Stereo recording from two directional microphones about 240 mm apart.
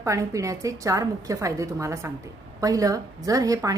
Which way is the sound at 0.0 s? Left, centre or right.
Centre.